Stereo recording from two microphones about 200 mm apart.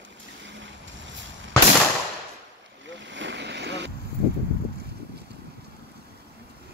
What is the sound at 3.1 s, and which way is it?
Vehicle, 65° right (ahead or behind).